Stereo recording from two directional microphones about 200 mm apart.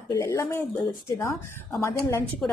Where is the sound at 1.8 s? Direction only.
15° left (ahead or behind).